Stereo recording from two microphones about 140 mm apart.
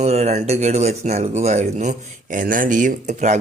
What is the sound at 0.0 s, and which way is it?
Speech, 50° right (ahead or behind).